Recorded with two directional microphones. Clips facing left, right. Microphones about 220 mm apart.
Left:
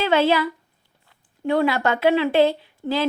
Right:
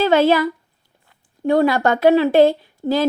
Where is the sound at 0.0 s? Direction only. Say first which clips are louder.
Right 4 dB; 45° right (ahead or behind).